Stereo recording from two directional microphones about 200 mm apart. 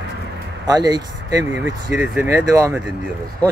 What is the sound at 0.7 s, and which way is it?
Speech, 20° right (ahead or behind).